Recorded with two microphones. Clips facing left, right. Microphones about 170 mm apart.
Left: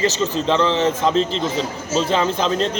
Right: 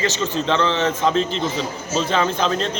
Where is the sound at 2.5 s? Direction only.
35° left (ahead or behind).